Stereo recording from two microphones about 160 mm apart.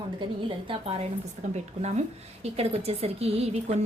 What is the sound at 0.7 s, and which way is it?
Speech, 40° right (ahead or behind).